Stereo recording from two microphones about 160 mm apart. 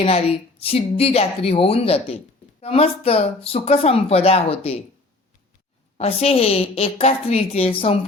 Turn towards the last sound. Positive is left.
turn(degrees=35)  # may be behind; listen again after turning